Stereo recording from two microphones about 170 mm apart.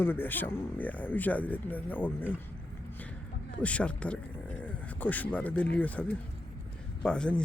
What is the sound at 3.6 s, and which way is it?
Speech, 10° left (ahead or behind).